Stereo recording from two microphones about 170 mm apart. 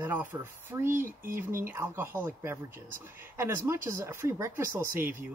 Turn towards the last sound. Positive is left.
turn(degrees=-15)  # may be behind; listen again after turning